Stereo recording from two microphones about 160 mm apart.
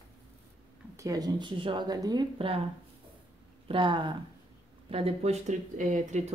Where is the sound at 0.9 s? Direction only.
20° right (ahead or behind).